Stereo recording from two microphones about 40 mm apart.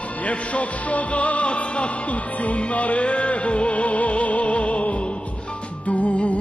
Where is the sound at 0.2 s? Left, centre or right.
Left.